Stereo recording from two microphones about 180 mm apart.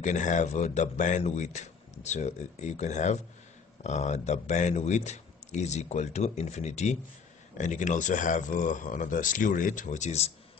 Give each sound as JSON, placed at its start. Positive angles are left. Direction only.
{"t": 0.0, "sound": "speech", "side_deg": 45}